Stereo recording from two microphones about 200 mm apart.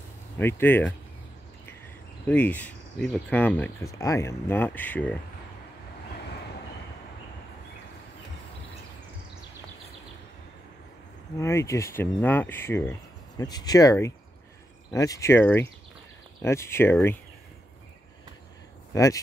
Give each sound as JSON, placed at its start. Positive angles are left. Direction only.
{"t": 0.4, "sound": "speech", "side_deg": 10}
{"t": 2.2, "sound": "speech", "side_deg": 10}
{"t": 11.3, "sound": "speech", "side_deg": 15}
{"t": 18.9, "sound": "speech", "side_deg": 15}